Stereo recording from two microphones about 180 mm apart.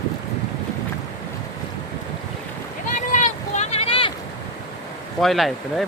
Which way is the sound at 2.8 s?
45° left (ahead or behind).